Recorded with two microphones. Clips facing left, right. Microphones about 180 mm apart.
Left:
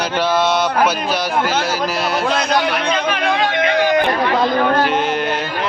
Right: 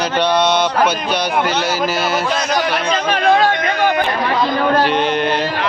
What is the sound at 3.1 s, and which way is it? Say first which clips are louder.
Speech: right 8 dB; 40° right (ahead or behind).